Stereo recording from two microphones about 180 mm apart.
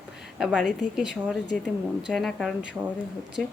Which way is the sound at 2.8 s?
10° right (ahead or behind).